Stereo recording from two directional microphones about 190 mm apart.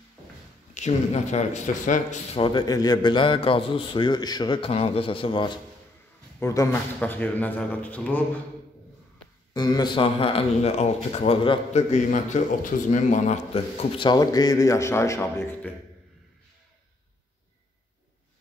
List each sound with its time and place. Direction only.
0.7 s speech: 35° left (ahead or behind)
6.4 s speech: 15° left (ahead or behind)
9.5 s speech: 20° left (ahead or behind)